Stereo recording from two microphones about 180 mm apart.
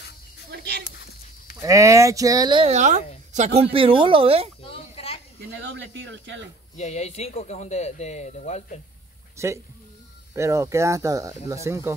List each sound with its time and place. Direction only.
0.5 s a sound: 65° right (ahead or behind)
1.6 s speech: 15° right (ahead or behind)
2.7 s speech: 45° right (ahead or behind)
4.6 s a sound: 35° left (ahead or behind)
5.7 s speech: 85° right
6.8 s speech: 40° left (ahead or behind)
9.4 s speech: 15° right (ahead or behind)